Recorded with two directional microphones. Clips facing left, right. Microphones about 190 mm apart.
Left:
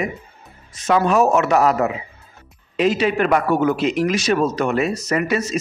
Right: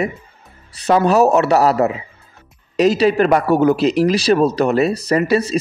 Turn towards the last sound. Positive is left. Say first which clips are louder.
# right 5 dB
turn(degrees=-35)  # may be behind; listen again after turning